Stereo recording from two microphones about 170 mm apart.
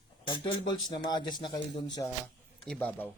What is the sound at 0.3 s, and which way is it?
Speech, 25° left (ahead or behind).